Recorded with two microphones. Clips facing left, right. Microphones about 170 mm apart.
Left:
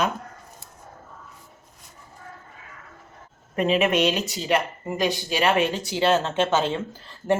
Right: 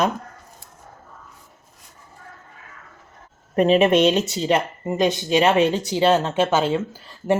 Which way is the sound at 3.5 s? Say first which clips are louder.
Right 5 dB; 35° right (ahead or behind).